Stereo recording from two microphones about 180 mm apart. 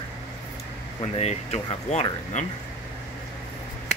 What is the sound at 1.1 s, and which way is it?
Speech, 35° left (ahead or behind).